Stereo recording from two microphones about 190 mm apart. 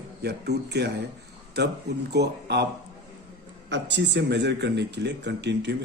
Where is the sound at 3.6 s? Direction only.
65° right (ahead or behind).